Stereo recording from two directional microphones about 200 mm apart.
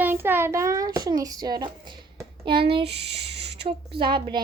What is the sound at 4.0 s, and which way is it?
Speech, 25° right (ahead or behind).